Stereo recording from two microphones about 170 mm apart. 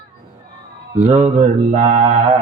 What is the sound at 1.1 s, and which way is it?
Mantra, 45° right (ahead or behind).